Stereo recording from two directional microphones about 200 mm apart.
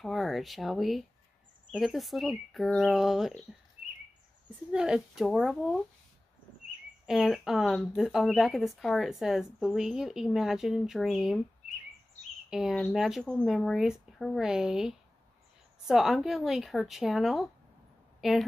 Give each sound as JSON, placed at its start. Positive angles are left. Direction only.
{"t": 0.0, "sound": "speech", "side_deg": 0}
{"t": 4.6, "sound": "speech", "side_deg": -5}
{"t": 7.1, "sound": "speech", "side_deg": 0}
{"t": 12.4, "sound": "speech", "side_deg": 0}